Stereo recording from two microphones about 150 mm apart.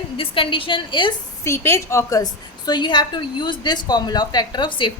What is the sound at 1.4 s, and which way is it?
A woman's voice, 20° left (ahead or behind).